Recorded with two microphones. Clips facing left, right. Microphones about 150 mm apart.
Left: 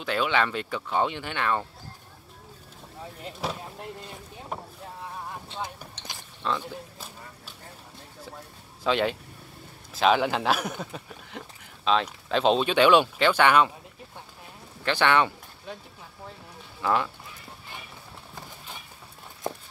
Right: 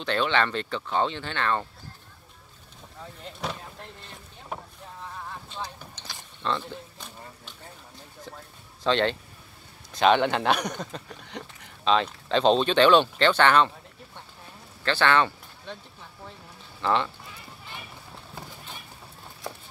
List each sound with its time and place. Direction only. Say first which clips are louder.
0.0 s speech: right 1 dB; 5° left (ahead or behind)
3.3 s speech: left 2 dB; 5° left (ahead or behind)
3.6 s boat: left 5 dB; 10° left (ahead or behind)
6.4 s a sound: even; 5° left (ahead or behind)
8.8 s speech: right 1 dB; 5° left (ahead or behind)
14.9 s speech: even; 15° left (ahead or behind)
16.8 s speech: even; 5° left (ahead or behind)